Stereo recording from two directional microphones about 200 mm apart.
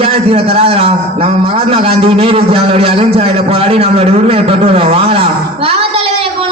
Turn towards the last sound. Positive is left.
turn(degrees=-30)  # may be behind; listen again after turning